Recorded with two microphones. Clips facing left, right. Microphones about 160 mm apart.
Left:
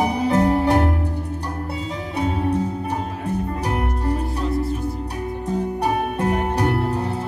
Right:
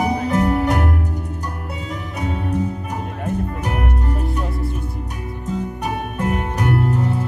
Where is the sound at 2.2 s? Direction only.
30° left (ahead or behind).